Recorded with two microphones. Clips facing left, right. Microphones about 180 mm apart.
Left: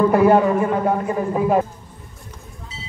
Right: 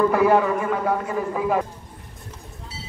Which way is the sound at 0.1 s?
25° left (ahead or behind).